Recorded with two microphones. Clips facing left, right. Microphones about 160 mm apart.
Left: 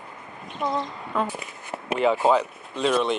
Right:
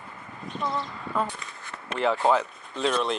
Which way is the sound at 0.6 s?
20° left (ahead or behind).